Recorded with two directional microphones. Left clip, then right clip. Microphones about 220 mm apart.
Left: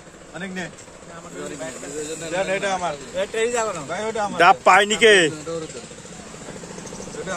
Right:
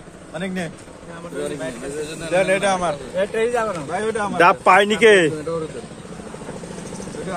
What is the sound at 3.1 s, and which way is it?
Speech, 55° left (ahead or behind).